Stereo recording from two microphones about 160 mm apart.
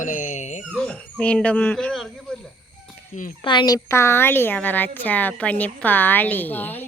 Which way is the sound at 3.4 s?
30° left (ahead or behind).